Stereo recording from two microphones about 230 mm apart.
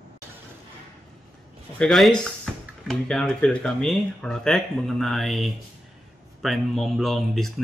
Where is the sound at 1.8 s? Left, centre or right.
Centre.